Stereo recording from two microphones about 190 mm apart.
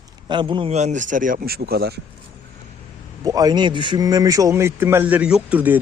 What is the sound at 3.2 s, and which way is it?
A man's voice, 20° right (ahead or behind).